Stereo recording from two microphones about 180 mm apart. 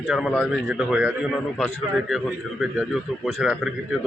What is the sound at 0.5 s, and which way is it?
A man's voice, 5° right (ahead or behind).